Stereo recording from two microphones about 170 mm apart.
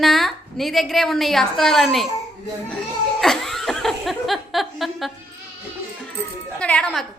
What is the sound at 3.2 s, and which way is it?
Chuckle, centre (ahead or behind).